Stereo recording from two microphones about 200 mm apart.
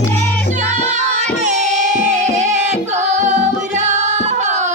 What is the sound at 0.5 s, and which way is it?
Music, 35° right (ahead or behind).